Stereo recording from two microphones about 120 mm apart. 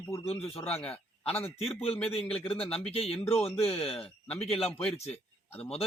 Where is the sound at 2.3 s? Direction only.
55° left (ahead or behind).